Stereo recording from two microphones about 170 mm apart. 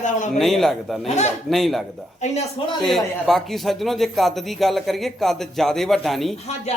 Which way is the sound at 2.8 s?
Centre (ahead or behind).